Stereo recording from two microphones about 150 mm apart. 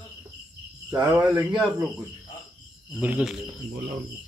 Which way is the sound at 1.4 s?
5° right (ahead or behind).